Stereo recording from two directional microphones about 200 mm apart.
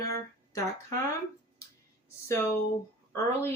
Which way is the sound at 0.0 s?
15° left (ahead or behind).